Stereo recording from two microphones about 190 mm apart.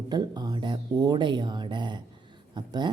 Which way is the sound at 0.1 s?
20° right (ahead or behind).